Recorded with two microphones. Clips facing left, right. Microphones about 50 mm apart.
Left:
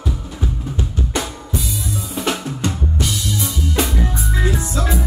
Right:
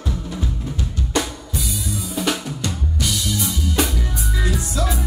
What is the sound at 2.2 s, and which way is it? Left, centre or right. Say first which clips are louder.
Drum: left 2 dB; left.